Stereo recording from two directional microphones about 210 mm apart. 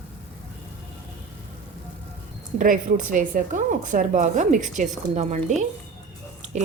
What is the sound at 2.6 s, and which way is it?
A woman's voice, 40° right (ahead or behind).